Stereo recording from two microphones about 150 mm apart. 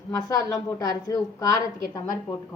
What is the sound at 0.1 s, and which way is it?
A woman's voice, 25° left (ahead or behind).